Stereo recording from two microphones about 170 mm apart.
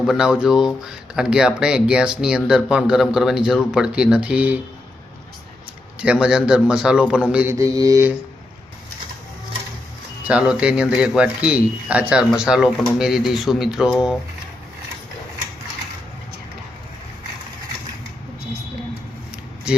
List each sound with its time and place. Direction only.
0.0 s speech: 5° right (ahead or behind)
6.0 s speech: 5° right (ahead or behind)
7.3 s mantra: 5° right (ahead or behind)
7.5 s mantra: 20° right (ahead or behind)
10.2 s speech: 5° right (ahead or behind)